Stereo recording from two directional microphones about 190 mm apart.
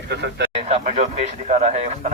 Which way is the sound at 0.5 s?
30° right (ahead or behind).